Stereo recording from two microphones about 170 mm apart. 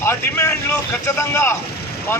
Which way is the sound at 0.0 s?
15° left (ahead or behind).